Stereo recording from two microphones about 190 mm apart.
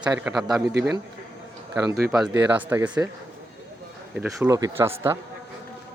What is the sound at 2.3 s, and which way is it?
Speech, 10° right (ahead or behind).